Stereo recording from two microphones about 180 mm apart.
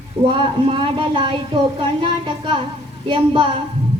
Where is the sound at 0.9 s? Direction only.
30° right (ahead or behind).